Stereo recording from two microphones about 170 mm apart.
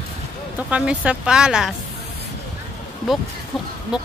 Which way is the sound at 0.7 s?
5° right (ahead or behind).